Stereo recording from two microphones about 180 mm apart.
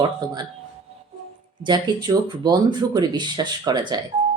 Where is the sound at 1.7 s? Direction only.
20° right (ahead or behind).